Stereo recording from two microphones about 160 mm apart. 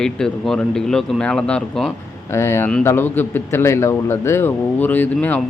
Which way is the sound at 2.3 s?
15° left (ahead or behind).